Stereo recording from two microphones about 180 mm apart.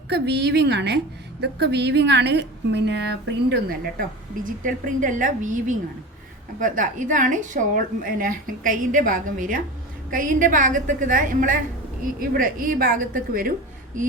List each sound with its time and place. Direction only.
0.1 s a woman's voice: 70° right (ahead or behind)
4.4 s a woman's voice: 45° right (ahead or behind)